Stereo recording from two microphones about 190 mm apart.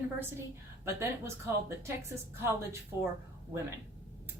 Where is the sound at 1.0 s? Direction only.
15° right (ahead or behind).